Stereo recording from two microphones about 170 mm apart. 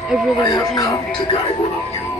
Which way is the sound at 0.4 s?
25° left (ahead or behind).